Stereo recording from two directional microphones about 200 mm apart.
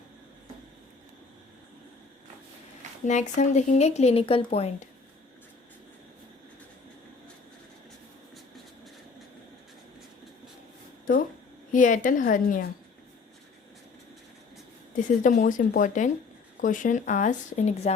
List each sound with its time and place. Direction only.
3.0 s speech: 35° left (ahead or behind)
11.7 s speech: 40° left (ahead or behind)
14.9 s speech: 40° left (ahead or behind)